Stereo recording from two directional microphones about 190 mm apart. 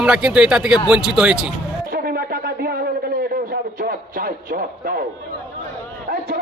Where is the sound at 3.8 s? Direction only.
50° right (ahead or behind).